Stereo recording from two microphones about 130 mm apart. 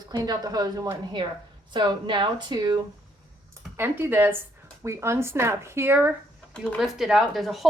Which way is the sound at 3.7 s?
20° right (ahead or behind).